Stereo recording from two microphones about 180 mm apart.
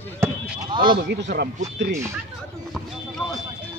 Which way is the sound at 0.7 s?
25° right (ahead or behind).